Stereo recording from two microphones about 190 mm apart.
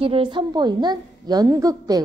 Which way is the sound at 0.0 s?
25° right (ahead or behind).